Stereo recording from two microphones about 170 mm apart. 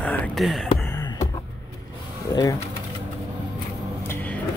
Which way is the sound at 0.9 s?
20° left (ahead or behind).